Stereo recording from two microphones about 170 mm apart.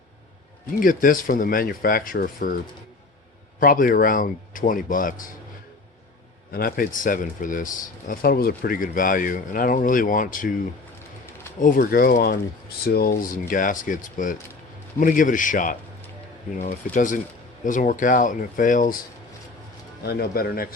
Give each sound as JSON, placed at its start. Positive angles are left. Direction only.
{"t": 0.8, "sound": "speech", "side_deg": 55}
{"t": 3.6, "sound": "speech", "side_deg": 55}
{"t": 6.5, "sound": "speech", "side_deg": 60}
{"t": 11.6, "sound": "speech", "side_deg": 55}
{"t": 16.9, "sound": "speech", "side_deg": 50}
{"t": 20.0, "sound": "speech", "side_deg": 65}